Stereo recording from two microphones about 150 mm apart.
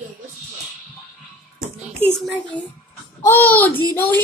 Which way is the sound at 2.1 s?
5° left (ahead or behind).